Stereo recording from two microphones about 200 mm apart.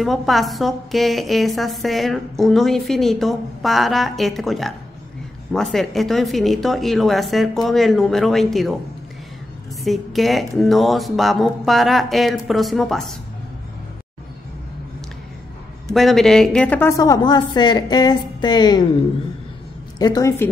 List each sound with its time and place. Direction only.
0.0 s a woman's voice: centre (ahead or behind)
9.8 s a woman's voice: centre (ahead or behind)
15.9 s a woman's voice: centre (ahead or behind); by 18.9 s 20° left (ahead or behind)
20.0 s a woman's voice: 20° left (ahead or behind)